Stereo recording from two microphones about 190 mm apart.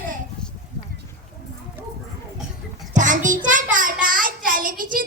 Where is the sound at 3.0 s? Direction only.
40° right (ahead or behind).